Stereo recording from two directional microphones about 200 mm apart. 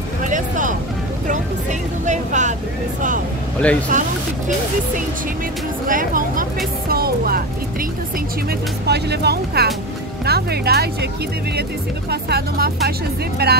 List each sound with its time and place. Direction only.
0.2 s a sound: 40° right (ahead or behind)
1.2 s vehicle: 40° right (ahead or behind)
3.9 s speech: 40° right (ahead or behind)
5.9 s speech: 45° right (ahead or behind)
8.5 s speech: 55° right (ahead or behind)
12.1 s speech: 50° right (ahead or behind)